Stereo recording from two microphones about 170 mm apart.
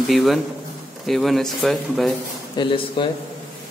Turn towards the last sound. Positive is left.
turn(degrees=30)  # may be behind; listen again after turning